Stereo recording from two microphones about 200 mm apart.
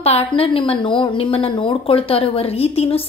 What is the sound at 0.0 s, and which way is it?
A woman's voice, 30° left (ahead or behind).